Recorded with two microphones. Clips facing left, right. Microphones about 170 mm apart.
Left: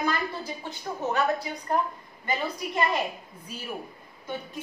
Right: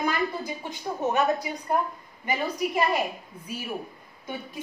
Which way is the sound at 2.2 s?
10° right (ahead or behind).